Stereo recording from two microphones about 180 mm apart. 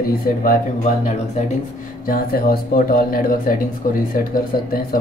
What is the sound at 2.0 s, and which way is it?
Speech, 55° left (ahead or behind).